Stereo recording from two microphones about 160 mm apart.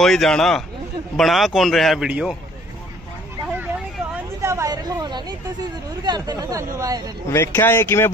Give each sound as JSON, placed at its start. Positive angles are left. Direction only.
{"t": 0.0, "sound": "speech", "side_deg": 0}
{"t": 4.4, "sound": "a sound", "side_deg": -15}
{"t": 6.0, "sound": "speech", "side_deg": -25}
{"t": 7.2, "sound": "speech", "side_deg": 15}